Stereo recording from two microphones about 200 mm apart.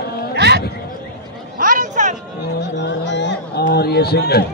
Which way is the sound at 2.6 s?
60° left (ahead or behind).